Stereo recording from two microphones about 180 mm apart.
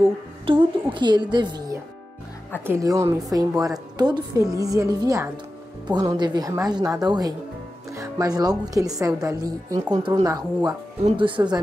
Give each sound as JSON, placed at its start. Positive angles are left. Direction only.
{"t": 0.5, "sound": "a woman's voice", "side_deg": -30}